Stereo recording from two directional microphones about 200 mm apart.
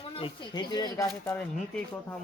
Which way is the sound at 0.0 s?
25° left (ahead or behind).